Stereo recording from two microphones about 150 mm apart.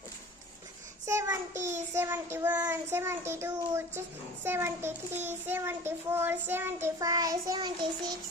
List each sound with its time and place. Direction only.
1.0 s a child's voice: 20° right (ahead or behind)